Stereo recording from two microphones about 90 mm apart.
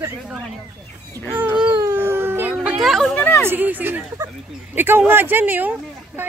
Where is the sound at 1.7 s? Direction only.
30° right (ahead or behind).